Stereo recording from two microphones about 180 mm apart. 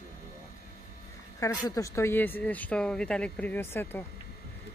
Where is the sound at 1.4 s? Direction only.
20° left (ahead or behind).